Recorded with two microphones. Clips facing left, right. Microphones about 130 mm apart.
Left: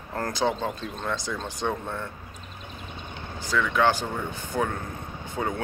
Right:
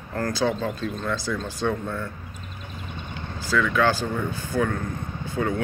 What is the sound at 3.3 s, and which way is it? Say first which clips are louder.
Vehicle: right 3 dB; 20° left (ahead or behind).